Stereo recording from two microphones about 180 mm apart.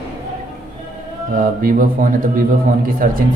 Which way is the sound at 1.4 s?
50° right (ahead or behind).